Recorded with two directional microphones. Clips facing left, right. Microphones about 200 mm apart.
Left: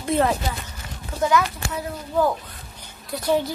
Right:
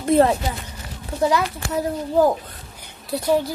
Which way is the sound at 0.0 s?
30° right (ahead or behind).